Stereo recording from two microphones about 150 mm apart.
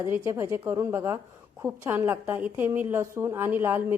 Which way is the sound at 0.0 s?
20° right (ahead or behind).